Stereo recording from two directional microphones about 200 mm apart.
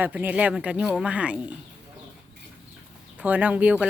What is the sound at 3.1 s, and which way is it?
Speech, 10° right (ahead or behind).